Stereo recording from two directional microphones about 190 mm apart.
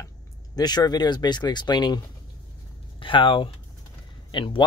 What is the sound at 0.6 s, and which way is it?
Speech, 20° left (ahead or behind).